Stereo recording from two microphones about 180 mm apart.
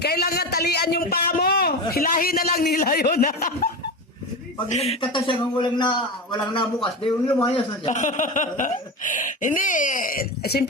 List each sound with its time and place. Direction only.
0.0 s a man's voice: 60° left (ahead or behind)
4.7 s a man's voice: 35° left (ahead or behind)
7.4 s speech: 35° left (ahead or behind); by 10.7 s 60° left (ahead or behind)